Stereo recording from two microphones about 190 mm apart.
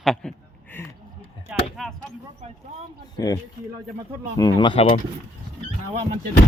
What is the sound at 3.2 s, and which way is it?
Speech, 20° left (ahead or behind).